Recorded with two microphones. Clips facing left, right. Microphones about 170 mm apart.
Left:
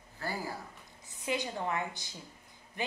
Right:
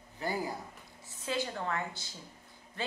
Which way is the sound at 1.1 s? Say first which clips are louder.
Even; 15° left (ahead or behind).